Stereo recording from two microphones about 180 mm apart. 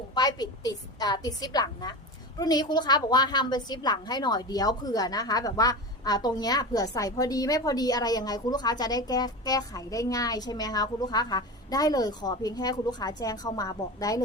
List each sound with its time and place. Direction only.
0.1 s a woman's voice: 20° left (ahead or behind)